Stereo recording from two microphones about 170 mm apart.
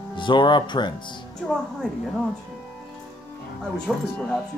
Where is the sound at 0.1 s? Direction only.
30° left (ahead or behind).